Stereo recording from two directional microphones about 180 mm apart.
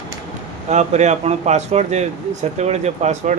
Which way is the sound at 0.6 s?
40° right (ahead or behind).